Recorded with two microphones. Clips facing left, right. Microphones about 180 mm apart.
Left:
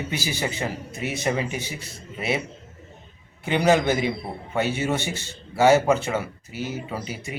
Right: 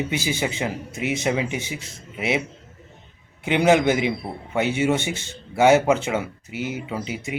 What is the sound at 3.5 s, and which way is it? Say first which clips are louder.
Speech: right 2 dB; 20° right (ahead or behind).